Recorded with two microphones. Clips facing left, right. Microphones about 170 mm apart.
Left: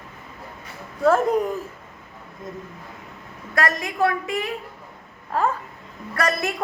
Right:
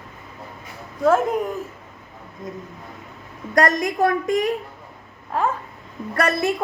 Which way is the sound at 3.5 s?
40° right (ahead or behind).